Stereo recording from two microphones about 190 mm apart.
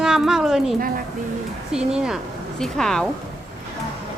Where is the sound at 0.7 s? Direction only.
50° right (ahead or behind).